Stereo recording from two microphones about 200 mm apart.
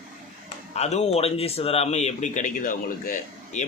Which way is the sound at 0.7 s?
35° left (ahead or behind).